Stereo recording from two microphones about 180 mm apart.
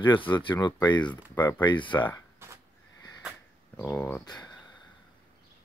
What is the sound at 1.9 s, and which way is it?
Speech, 10° left (ahead or behind).